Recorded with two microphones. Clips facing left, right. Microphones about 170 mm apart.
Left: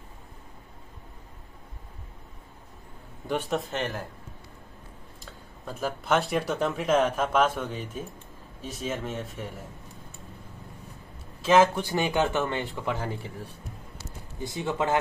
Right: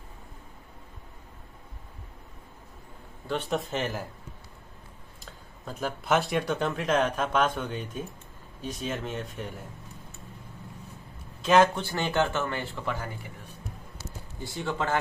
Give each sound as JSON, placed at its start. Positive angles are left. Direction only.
{"t": 3.4, "sound": "speech", "side_deg": 0}
{"t": 5.2, "sound": "speech", "side_deg": 0}
{"t": 11.4, "sound": "speech", "side_deg": 5}
{"t": 14.4, "sound": "speech", "side_deg": 15}